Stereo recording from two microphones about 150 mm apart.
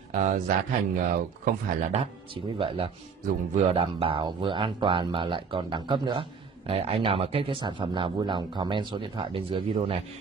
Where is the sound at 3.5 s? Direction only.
40° right (ahead or behind).